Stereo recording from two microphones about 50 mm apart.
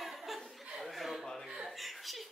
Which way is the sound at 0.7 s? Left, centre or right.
Centre.